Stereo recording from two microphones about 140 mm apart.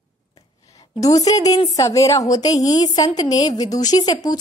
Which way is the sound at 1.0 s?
25° left (ahead or behind).